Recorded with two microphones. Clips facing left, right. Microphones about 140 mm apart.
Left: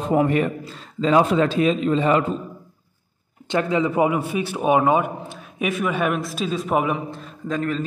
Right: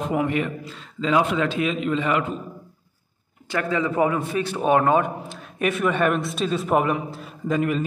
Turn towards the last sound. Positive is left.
turn(degrees=-10)  # may be behind; listen again after turning